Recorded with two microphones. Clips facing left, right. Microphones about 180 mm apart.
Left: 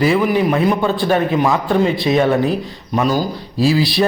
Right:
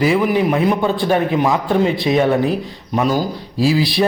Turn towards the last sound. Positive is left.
turn(degrees=-15)  # may be behind; listen again after turning